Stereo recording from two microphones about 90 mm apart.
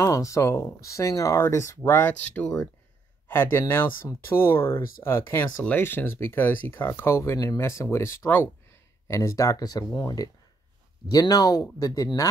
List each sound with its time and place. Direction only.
0.0 s speech: 35° left (ahead or behind); by 2.7 s 15° left (ahead or behind)
3.3 s speech: 25° left (ahead or behind); by 12.3 s 45° left (ahead or behind)